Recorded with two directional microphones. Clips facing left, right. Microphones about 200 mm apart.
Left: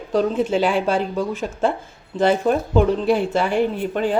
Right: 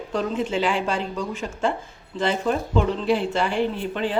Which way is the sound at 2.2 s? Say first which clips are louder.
Left 5 dB; 40° left (ahead or behind).